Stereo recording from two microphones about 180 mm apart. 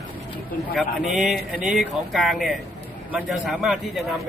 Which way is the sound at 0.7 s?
Centre (ahead or behind).